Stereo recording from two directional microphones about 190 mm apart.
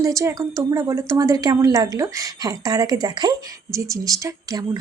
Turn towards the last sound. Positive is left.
turn(degrees=-15)  # may be behind; listen again after turning